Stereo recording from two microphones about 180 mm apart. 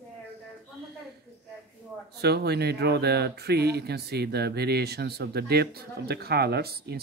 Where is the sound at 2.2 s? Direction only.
65° right (ahead or behind).